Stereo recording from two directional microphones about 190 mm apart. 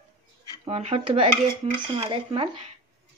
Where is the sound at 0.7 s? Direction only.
30° right (ahead or behind).